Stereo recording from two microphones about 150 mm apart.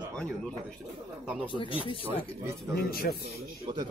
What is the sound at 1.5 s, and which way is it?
Speech, 35° left (ahead or behind).